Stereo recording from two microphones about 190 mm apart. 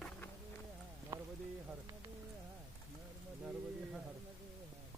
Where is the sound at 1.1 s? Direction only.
15° right (ahead or behind).